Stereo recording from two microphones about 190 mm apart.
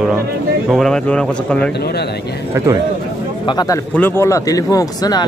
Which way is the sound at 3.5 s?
20° left (ahead or behind).